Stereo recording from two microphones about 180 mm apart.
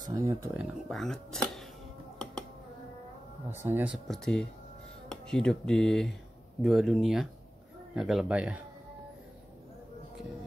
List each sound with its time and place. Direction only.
0.0 s speech: 15° right (ahead or behind)
0.8 s speech: centre (ahead or behind)
3.6 s speech: 10° right (ahead or behind)